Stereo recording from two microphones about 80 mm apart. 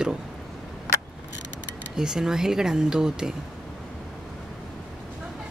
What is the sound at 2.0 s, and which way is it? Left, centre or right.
Speech, centre.